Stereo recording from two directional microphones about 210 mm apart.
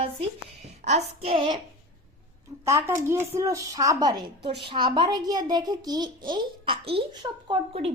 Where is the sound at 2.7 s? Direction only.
15° right (ahead or behind).